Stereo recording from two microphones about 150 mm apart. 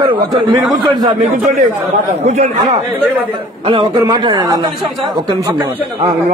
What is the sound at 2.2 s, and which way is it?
Speech, 50° right (ahead or behind).